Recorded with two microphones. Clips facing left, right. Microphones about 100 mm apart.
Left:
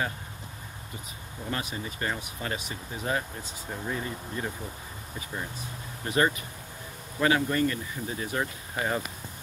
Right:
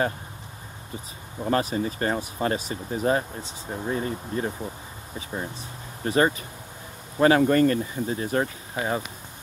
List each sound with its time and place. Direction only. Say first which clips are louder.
1.4 s speech: right 10 dB; 40° right (ahead or behind)
3.6 s speech: right 4 dB; 20° right (ahead or behind)
3.9 s speech: right 7 dB; 30° right (ahead or behind)
6.0 s speech: right 4 dB; 30° right (ahead or behind)
7.2 s speech: right 7 dB; 40° right (ahead or behind)
8.7 s speech: right 2 dB; 15° right (ahead or behind)